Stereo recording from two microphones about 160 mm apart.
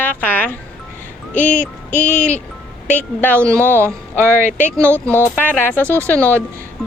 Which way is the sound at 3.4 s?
15° right (ahead or behind).